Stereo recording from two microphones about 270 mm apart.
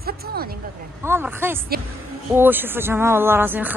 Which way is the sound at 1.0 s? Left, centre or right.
Centre.